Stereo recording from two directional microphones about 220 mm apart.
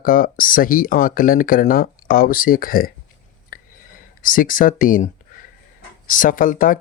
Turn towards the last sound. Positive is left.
turn(degrees=40)  # may be behind; listen again after turning